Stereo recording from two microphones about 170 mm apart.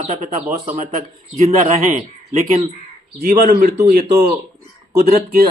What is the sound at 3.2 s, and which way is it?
Speech, 55° right (ahead or behind).